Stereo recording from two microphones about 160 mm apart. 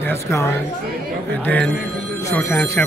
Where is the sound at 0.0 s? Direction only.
15° left (ahead or behind).